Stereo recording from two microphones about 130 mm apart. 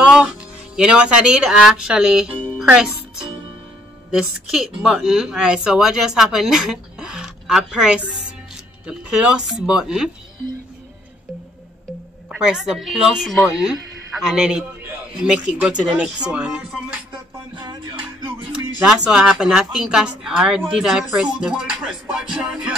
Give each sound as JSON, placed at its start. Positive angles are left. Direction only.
{"t": 0.0, "sound": "a child's voice", "side_deg": -10}
{"t": 12.3, "sound": "speech", "side_deg": -5}
{"t": 17.6, "sound": "music", "side_deg": -35}
{"t": 18.5, "sound": "speech", "side_deg": -5}